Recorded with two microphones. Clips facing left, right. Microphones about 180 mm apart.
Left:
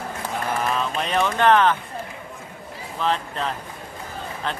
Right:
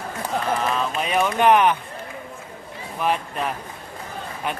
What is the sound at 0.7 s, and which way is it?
Speech, 5° right (ahead or behind).